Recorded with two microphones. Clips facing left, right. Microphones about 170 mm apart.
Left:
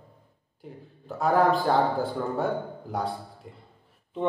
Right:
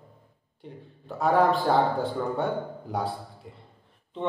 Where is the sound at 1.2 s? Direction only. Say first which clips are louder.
Even; centre (ahead or behind).